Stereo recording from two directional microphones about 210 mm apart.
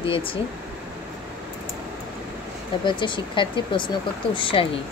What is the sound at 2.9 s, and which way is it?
Speech, 20° left (ahead or behind).